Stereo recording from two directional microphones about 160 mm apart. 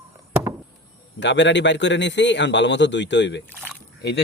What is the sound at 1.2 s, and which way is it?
Speech, 90° left.